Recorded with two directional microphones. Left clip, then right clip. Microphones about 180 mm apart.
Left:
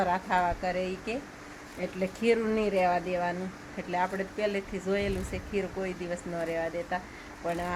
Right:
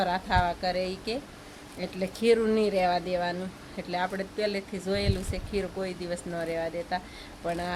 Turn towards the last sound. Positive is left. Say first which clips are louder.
# right 1 dB
turn(degrees=-10)  # may be behind; listen again after turning